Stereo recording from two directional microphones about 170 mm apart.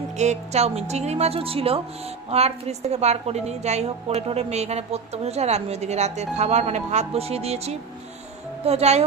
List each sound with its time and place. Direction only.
0.2 s a woman's voice: 40° right (ahead or behind)